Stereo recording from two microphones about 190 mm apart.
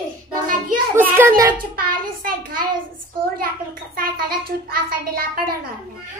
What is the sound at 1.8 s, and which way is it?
Child singing, 50° right (ahead or behind).